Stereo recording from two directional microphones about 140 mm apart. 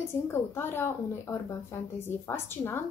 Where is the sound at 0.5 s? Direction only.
15° left (ahead or behind).